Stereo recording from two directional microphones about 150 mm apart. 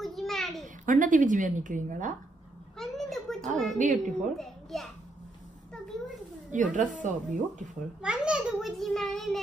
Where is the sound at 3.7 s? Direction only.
55° right (ahead or behind).